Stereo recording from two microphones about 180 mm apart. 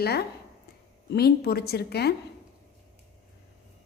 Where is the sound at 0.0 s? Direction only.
65° left (ahead or behind).